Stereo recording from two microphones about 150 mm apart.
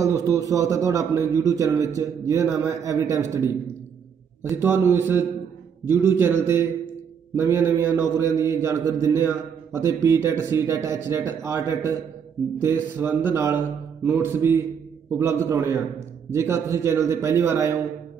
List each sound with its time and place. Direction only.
0.0 s a man's voice: 20° right (ahead or behind)